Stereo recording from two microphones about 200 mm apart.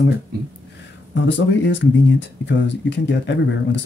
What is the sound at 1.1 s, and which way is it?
Speech, 65° left (ahead or behind).